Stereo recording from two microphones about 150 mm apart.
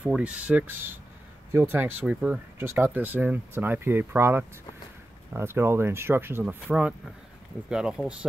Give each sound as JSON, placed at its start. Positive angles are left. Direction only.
{"t": 0.0, "sound": "speech", "side_deg": -5}